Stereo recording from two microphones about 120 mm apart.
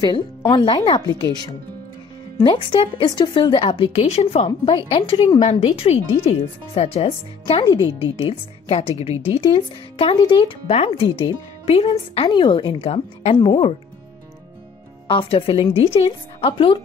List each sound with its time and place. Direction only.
0.5 s a woman's voice: 40° left (ahead or behind); by 4.5 s 65° left (ahead or behind)
4.5 s a woman's voice: 45° left (ahead or behind)
5.4 s speech: 60° left (ahead or behind)
7.6 s a woman's voice: 45° left (ahead or behind)
12.3 s a woman's voice: 40° left (ahead or behind)
15.0 s a woman's voice: 50° left (ahead or behind)